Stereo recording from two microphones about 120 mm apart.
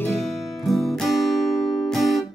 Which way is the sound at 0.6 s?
Centre (ahead or behind).